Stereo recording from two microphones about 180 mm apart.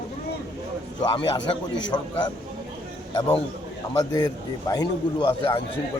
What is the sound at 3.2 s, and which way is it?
A man's voice, 25° left (ahead or behind).